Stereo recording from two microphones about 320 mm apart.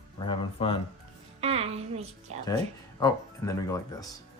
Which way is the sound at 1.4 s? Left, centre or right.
Centre.